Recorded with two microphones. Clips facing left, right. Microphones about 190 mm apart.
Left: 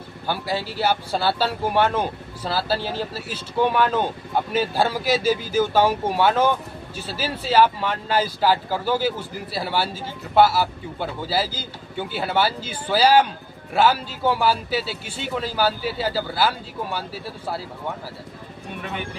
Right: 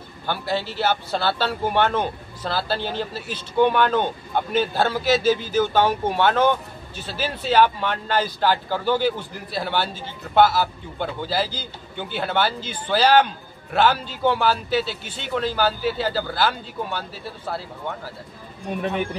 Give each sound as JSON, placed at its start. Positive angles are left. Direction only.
{"t": 0.3, "sound": "a man's voice", "side_deg": 10}